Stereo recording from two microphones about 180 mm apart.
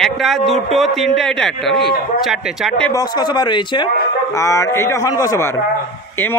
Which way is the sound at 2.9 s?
20° left (ahead or behind).